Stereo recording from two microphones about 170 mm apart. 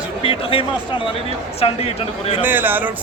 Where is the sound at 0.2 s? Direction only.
35° left (ahead or behind).